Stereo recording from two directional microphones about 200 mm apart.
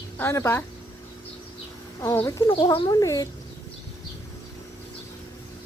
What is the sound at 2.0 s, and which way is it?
Speech, 15° left (ahead or behind).